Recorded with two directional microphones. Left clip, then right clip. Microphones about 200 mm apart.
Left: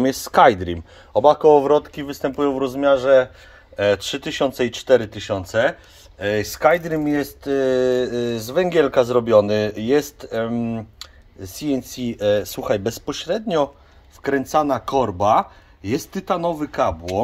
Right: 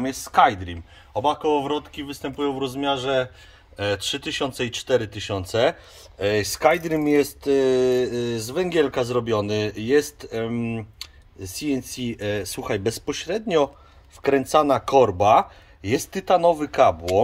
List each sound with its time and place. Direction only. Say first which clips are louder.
0.0 s speech: left 4 dB; 35° left (ahead or behind)
2.4 s speech: left 5 dB; 10° left (ahead or behind)
5.6 s speech: left 1 dB; 10° right (ahead or behind)